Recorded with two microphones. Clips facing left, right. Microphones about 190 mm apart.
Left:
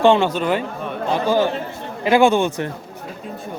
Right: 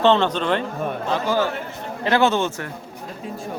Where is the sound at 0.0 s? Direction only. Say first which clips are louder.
Left 2 dB; 10° left (ahead or behind).